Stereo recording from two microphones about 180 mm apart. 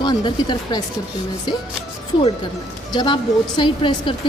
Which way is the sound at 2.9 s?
25° left (ahead or behind).